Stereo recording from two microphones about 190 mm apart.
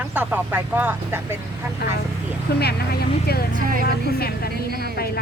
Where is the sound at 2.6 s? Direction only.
55° left (ahead or behind).